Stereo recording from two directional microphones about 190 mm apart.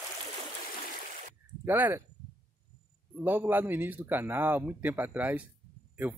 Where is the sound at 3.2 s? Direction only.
10° right (ahead or behind).